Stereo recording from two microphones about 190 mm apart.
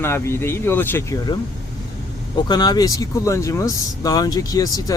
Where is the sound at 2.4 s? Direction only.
20° left (ahead or behind).